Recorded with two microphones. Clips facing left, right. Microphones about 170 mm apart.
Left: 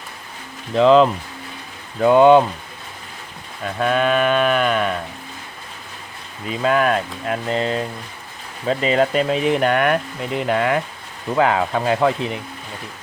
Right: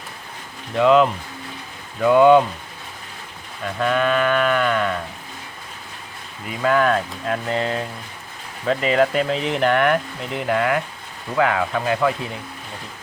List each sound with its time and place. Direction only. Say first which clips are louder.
0.8 s speech: left 3 dB; 30° left (ahead or behind)
3.8 s speech: left 2 dB; 20° left (ahead or behind)
6.5 s speech: even; 20° left (ahead or behind)